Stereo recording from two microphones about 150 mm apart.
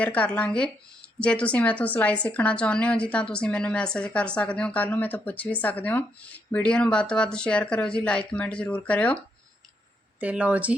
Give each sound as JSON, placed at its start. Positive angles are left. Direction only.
{"t": 0.0, "sound": "a woman's voice", "side_deg": 10}
{"t": 10.2, "sound": "speech", "side_deg": -10}